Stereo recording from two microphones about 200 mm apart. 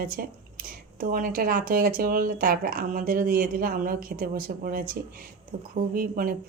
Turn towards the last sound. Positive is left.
turn(degrees=-45)  # may be behind; listen again after turning